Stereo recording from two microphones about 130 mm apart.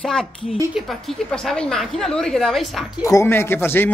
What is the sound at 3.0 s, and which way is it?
Speech, 20° left (ahead or behind).